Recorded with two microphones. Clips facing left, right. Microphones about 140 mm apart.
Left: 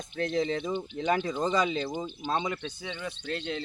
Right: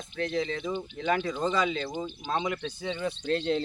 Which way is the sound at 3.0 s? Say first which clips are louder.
Right 7 dB; 30° right (ahead or behind).